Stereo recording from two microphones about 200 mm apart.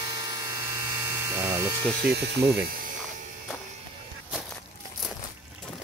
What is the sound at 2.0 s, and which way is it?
Speech, 55° right (ahead or behind).